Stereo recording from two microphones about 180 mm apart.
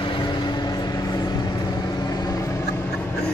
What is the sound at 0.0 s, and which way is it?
Vehicle, 25° left (ahead or behind).